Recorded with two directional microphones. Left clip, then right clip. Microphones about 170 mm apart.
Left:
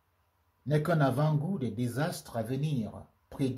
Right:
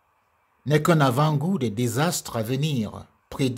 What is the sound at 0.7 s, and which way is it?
Speech, 60° right (ahead or behind).